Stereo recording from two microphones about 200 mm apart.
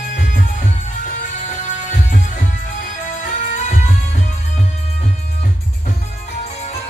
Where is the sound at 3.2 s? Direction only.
40° left (ahead or behind).